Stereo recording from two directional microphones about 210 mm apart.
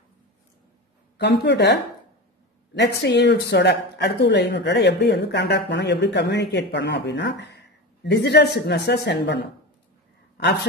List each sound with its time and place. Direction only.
1.1 s speech: 55° left (ahead or behind)
2.8 s speech: 55° left (ahead or behind)